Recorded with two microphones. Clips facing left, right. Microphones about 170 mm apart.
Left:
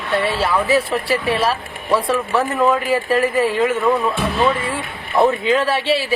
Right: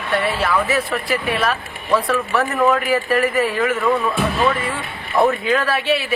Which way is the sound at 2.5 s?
10° left (ahead or behind).